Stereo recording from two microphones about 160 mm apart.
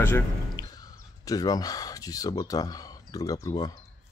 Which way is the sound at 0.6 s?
25° left (ahead or behind).